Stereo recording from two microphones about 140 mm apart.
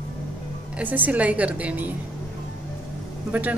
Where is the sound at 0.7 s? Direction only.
10° right (ahead or behind).